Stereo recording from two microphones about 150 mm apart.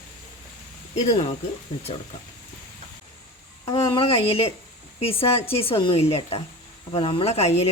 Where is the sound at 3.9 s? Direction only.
40° left (ahead or behind).